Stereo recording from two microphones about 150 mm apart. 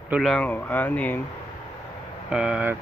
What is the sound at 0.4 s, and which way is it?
Speech, 10° left (ahead or behind).